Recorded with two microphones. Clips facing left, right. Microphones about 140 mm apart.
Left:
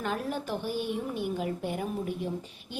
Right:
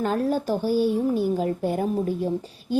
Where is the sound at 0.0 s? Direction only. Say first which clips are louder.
Right 9 dB; 35° right (ahead or behind).